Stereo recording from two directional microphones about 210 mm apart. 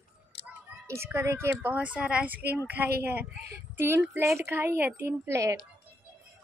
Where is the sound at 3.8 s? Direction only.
10° right (ahead or behind).